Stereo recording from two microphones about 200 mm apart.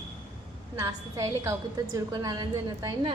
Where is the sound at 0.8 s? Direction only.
15° right (ahead or behind).